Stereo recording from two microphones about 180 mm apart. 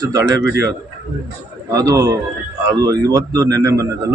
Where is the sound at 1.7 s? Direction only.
20° right (ahead or behind).